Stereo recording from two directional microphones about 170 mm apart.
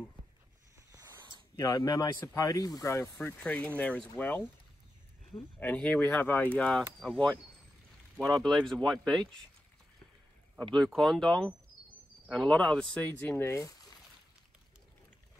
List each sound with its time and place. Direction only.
1.6 s speech: 20° left (ahead or behind)
5.6 s speech: 5° left (ahead or behind)
8.6 s speech: centre (ahead or behind)
10.7 s speech: centre (ahead or behind)